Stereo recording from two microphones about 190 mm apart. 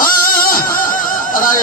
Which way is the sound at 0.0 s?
50° left (ahead or behind).